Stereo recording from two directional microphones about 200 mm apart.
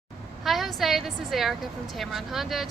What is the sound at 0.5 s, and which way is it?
Speech, centre (ahead or behind).